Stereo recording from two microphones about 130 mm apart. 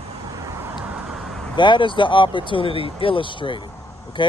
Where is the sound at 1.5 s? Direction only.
35° left (ahead or behind).